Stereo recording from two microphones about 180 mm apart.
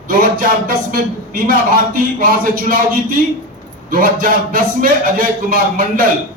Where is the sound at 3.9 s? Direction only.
50° right (ahead or behind).